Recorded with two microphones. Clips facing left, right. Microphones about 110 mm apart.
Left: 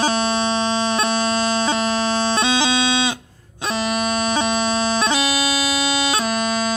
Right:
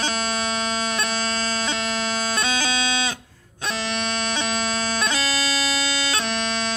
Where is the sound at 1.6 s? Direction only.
35° left (ahead or behind).